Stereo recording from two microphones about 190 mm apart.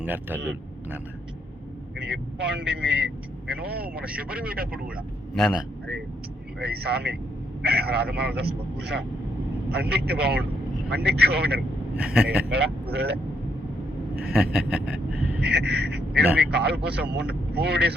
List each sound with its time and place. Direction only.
0.0 s speech: 10° right (ahead or behind)
2.0 s speech: 70° right (ahead or behind); by 4.0 s 55° right (ahead or behind)
4.0 s speech: 5° right (ahead or behind)
4.5 s speech: 50° right (ahead or behind)
5.3 s a man's voice: centre (ahead or behind)
6.6 s speech: 60° right (ahead or behind)
11.9 s a man's voice: 5° right (ahead or behind)
12.5 s speech: 55° right (ahead or behind)
14.2 s speech: 50° right (ahead or behind)
14.7 s vehicle: 5° right (ahead or behind)
15.4 s speech: 60° right (ahead or behind)